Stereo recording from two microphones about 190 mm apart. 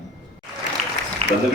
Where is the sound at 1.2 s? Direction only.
30° right (ahead or behind).